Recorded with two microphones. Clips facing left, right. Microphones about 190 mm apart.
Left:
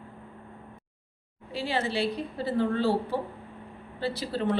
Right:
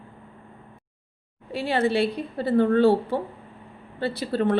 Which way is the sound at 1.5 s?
55° right (ahead or behind).